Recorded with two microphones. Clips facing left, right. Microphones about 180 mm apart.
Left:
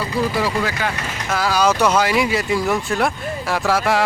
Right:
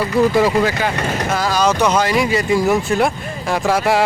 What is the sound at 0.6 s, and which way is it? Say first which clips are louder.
Speech: right 5 dB; 25° right (ahead or behind).